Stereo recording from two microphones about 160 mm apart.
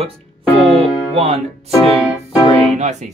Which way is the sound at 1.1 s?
40° right (ahead or behind).